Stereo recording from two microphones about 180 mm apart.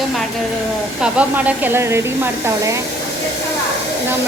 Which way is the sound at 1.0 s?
5° right (ahead or behind).